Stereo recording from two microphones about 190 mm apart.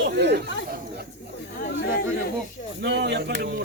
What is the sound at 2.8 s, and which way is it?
Speech, 60° right (ahead or behind).